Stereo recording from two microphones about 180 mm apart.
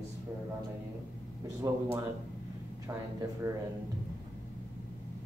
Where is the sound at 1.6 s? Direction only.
20° right (ahead or behind).